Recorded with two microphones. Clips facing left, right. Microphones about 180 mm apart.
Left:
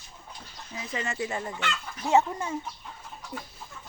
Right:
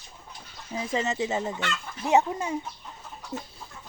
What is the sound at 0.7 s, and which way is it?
Speech, 30° right (ahead or behind).